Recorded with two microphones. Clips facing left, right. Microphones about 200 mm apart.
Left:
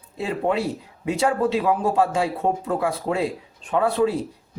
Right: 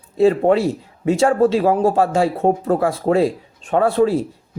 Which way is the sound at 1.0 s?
45° right (ahead or behind).